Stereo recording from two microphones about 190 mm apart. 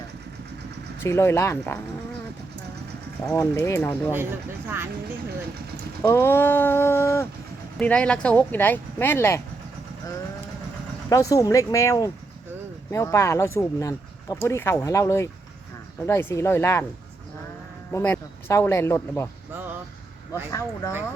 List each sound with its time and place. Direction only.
1.0 s speech: 15° left (ahead or behind)
3.3 s speech: 15° left (ahead or behind)
6.0 s speech: 15° left (ahead or behind)
11.1 s speech: 15° left (ahead or behind)
17.9 s speech: 10° left (ahead or behind)
20.3 s speech: 15° left (ahead or behind)